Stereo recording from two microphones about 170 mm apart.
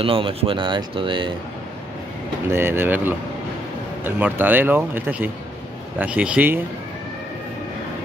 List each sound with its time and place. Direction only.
0.0 s speech: 30° right (ahead or behind)
2.5 s speech: 15° right (ahead or behind)